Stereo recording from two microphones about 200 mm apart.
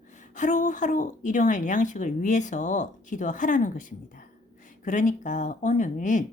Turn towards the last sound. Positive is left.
turn(degrees=40)  # may be behind; listen again after turning